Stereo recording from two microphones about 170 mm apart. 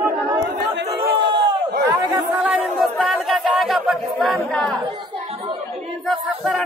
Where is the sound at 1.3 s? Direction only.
80° right.